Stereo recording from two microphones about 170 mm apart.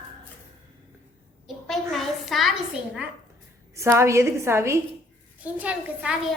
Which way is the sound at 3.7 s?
15° right (ahead or behind).